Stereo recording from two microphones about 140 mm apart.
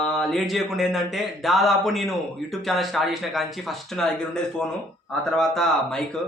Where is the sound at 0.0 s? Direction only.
5° left (ahead or behind).